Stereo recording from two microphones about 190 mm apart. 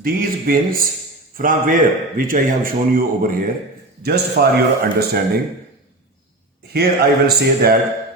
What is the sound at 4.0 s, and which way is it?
Speech, 55° right (ahead or behind).